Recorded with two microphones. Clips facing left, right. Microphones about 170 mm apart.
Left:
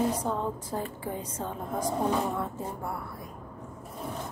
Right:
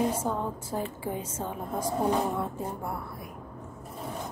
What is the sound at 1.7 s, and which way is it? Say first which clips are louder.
A woman's voice: right 1 dB; 10° right (ahead or behind).